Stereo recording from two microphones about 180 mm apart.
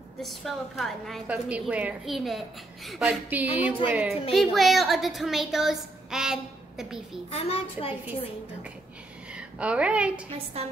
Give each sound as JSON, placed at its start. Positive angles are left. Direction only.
{"t": 0.2, "sound": "a woman's voice", "side_deg": 0}
{"t": 7.2, "sound": "a child's voice", "side_deg": 35}
{"t": 9.3, "sound": "a woman's voice", "side_deg": -5}
{"t": 10.6, "sound": "a woman's voice", "side_deg": -35}